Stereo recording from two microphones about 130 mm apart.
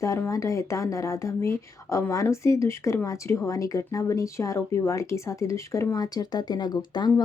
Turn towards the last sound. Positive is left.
turn(degrees=35)  # may be behind; listen again after turning